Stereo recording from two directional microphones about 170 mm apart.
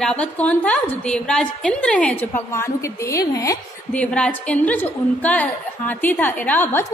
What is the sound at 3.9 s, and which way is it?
A woman's voice, 5° left (ahead or behind).